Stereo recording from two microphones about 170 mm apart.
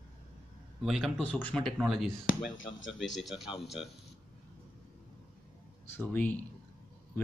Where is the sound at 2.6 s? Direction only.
90° left.